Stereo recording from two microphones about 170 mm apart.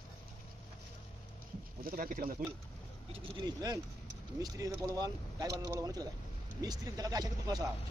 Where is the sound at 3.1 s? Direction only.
25° right (ahead or behind).